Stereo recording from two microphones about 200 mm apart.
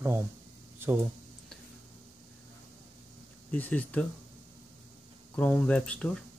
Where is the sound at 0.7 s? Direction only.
10° right (ahead or behind).